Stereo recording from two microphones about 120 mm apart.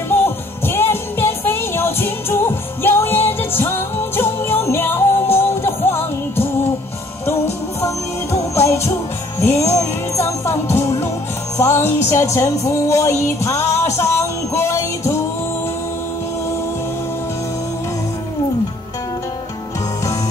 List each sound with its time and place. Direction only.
0.1 s music: 20° left (ahead or behind)
8.5 s music: 25° left (ahead or behind)